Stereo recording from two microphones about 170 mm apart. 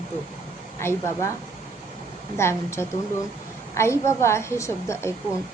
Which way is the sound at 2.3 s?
15° left (ahead or behind).